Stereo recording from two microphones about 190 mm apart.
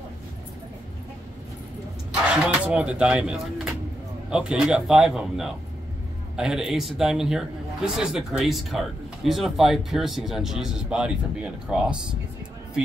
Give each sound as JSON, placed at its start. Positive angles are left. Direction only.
{"t": 2.2, "sound": "a man's voice", "side_deg": -5}